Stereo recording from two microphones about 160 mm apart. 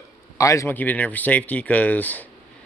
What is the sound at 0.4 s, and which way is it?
Speech, 20° left (ahead or behind).